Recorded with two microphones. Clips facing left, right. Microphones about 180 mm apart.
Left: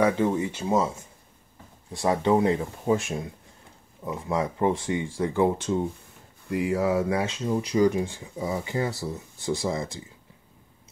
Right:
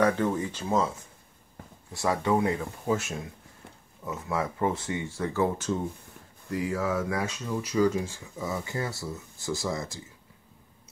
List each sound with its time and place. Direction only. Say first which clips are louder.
0.0 s speech: left 2 dB; 10° left (ahead or behind)
1.9 s speech: left 4 dB; 20° left (ahead or behind)
6.5 s speech: left 4 dB; 25° left (ahead or behind)